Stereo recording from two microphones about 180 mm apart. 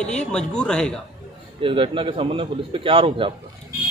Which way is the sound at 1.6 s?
30° right (ahead or behind).